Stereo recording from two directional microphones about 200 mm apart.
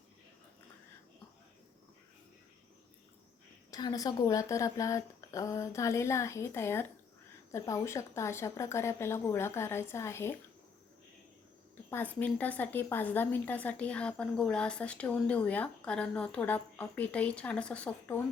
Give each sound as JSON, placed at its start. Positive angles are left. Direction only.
{"t": 3.7, "sound": "a woman's voice", "side_deg": 20}
{"t": 11.9, "sound": "a woman's voice", "side_deg": 10}